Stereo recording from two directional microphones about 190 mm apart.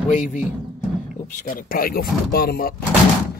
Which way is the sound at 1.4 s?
50° left (ahead or behind).